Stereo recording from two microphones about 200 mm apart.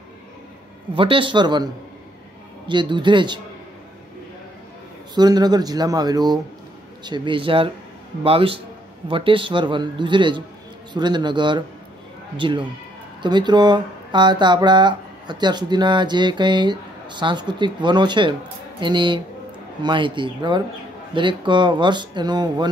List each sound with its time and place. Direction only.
0.9 s speech: 25° right (ahead or behind)
2.7 s speech: 25° right (ahead or behind)
5.1 s speech: 20° right (ahead or behind)